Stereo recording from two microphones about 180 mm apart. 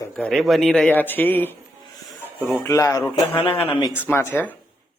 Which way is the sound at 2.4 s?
10° right (ahead or behind).